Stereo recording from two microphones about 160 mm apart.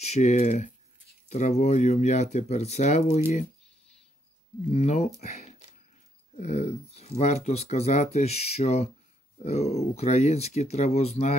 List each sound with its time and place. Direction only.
0.0 s speech: 45° left (ahead or behind)
4.6 s speech: 40° left (ahead or behind)